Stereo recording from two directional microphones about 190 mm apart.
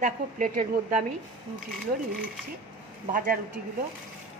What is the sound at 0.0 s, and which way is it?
A woman's voice, 45° right (ahead or behind).